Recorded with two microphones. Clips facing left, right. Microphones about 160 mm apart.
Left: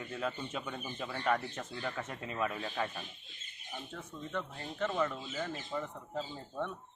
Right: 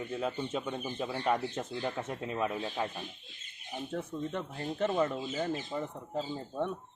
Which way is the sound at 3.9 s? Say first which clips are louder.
Right 5 dB; 40° right (ahead or behind).